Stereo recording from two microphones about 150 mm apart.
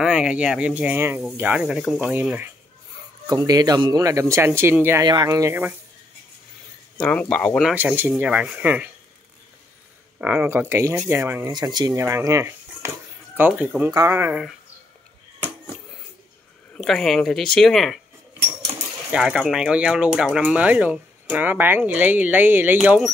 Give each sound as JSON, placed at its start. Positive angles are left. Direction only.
{"t": 0.0, "sound": "speech", "side_deg": -5}
{"t": 3.3, "sound": "speech", "side_deg": -25}
{"t": 5.0, "sound": "speech", "side_deg": -25}
{"t": 7.0, "sound": "speech", "side_deg": 10}
{"t": 7.7, "sound": "speech", "side_deg": -15}
{"t": 10.2, "sound": "speech", "side_deg": -10}
{"t": 11.5, "sound": "speech", "side_deg": -30}
{"t": 16.7, "sound": "speech", "side_deg": 5}
{"t": 19.1, "sound": "speech", "side_deg": -5}